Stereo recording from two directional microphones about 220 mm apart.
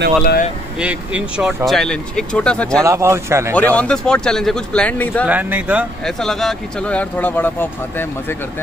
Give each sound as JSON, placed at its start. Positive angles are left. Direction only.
{"t": 0.2, "sound": "speech", "side_deg": 40}
{"t": 0.7, "sound": "speech", "side_deg": -5}
{"t": 2.8, "sound": "speech", "side_deg": -15}
{"t": 3.5, "sound": "speech", "side_deg": 5}
{"t": 5.2, "sound": "speech", "side_deg": -5}